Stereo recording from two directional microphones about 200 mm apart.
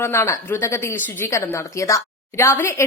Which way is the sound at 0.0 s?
15° left (ahead or behind).